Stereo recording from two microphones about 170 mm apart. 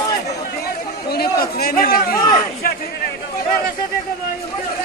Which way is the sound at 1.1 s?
65° left (ahead or behind).